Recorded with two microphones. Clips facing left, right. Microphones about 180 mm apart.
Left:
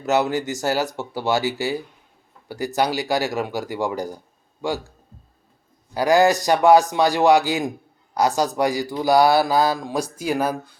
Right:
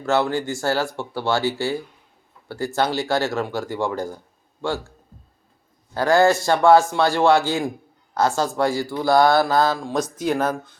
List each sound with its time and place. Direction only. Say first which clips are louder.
0.0 s speech: even; 20° left (ahead or behind)
5.9 s speech: even; 15° left (ahead or behind)